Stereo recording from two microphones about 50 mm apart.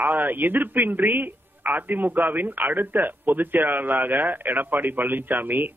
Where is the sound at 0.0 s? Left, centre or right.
Right.